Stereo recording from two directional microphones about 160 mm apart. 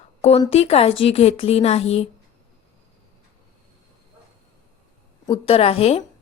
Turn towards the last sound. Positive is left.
turn(degrees=40)  # may be behind; listen again after turning